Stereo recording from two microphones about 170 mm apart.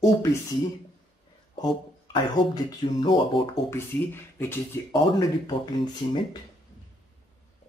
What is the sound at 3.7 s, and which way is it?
Speech, 15° left (ahead or behind).